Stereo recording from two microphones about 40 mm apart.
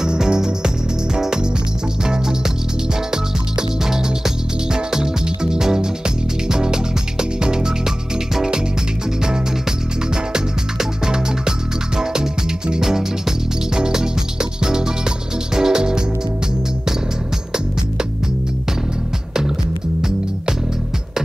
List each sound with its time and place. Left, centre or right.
0.0 s music: centre
3.1 s music: centre
9.2 s music: centre